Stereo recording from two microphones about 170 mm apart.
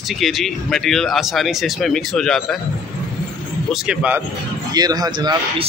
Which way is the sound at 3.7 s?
5° right (ahead or behind).